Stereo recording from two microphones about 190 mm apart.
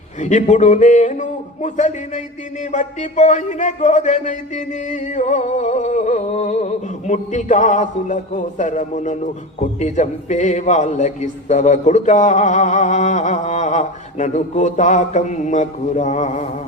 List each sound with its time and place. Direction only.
0.2 s a man's voice: 40° left (ahead or behind)